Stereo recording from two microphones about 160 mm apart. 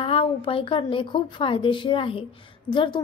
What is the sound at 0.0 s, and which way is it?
A woman's voice, 35° left (ahead or behind).